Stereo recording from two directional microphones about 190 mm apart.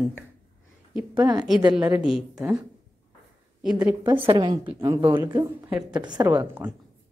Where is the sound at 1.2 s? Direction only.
20° right (ahead or behind).